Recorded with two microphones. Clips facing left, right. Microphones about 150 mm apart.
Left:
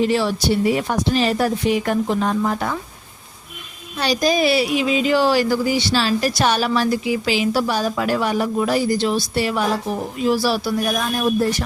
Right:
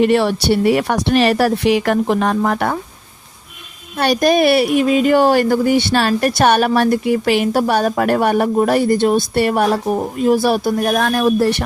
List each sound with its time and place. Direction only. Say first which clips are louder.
0.0 s speech: right 5 dB; 60° right (ahead or behind)
3.9 s speech: right 5 dB; 55° right (ahead or behind); by 11.6 s 75° right (ahead or behind)